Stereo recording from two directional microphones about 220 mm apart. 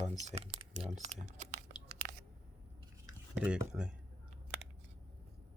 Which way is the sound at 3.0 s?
5° right (ahead or behind).